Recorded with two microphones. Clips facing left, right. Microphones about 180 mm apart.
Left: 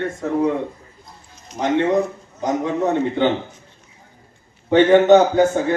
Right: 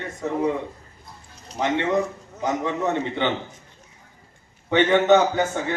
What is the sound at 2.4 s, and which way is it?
Speech, 45° left (ahead or behind).